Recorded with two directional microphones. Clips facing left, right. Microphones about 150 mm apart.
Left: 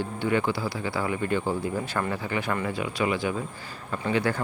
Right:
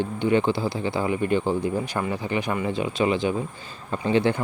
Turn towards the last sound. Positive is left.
turn(degrees=-25)  # may be behind; listen again after turning